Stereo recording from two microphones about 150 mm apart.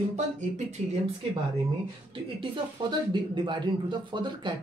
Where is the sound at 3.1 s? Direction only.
30° right (ahead or behind).